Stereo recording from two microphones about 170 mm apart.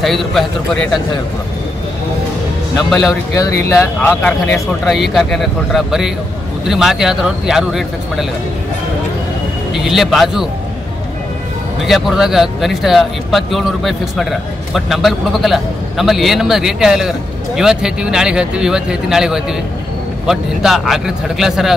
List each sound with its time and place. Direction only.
0.0 s a man's voice: centre (ahead or behind)
3.1 s speech: 20° left (ahead or behind)
4.8 s a man's voice: centre (ahead or behind)
9.8 s a man's voice: centre (ahead or behind)
11.8 s a man's voice: centre (ahead or behind)